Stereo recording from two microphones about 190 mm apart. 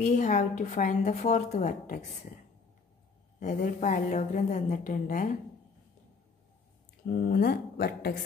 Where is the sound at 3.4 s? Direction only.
40° left (ahead or behind).